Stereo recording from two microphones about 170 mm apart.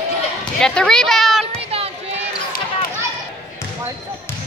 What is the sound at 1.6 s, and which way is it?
Run, 35° right (ahead or behind).